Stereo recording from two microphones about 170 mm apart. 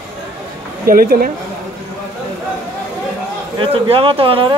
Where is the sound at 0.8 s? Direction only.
60° right (ahead or behind).